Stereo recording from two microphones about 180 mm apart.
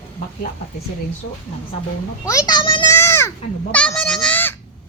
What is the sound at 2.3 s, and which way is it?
Speech, 20° left (ahead or behind).